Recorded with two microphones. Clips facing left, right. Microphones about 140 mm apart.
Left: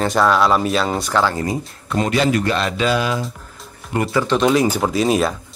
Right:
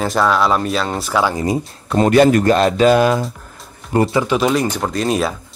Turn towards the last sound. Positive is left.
turn(degrees=0)  # may be behind; listen again after turning